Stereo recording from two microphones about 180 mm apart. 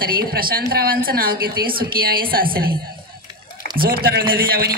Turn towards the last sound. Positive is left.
turn(degrees=-60)  # may be behind; listen again after turning